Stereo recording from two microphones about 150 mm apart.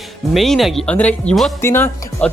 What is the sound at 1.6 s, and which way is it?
Speech, 15° left (ahead or behind).